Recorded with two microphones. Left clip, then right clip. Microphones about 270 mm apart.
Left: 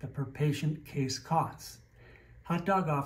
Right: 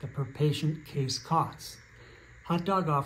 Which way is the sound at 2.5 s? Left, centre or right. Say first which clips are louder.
Right 1 dB; centre.